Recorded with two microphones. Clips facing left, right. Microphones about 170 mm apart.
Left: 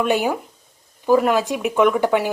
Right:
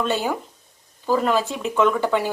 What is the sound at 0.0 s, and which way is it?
Speech, 15° left (ahead or behind).